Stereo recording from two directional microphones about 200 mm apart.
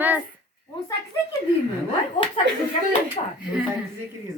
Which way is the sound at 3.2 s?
30° left (ahead or behind).